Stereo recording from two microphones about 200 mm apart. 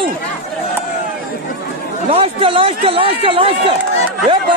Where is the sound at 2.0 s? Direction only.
30° right (ahead or behind).